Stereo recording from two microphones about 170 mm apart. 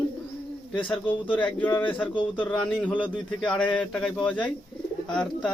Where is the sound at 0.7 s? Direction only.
30° left (ahead or behind).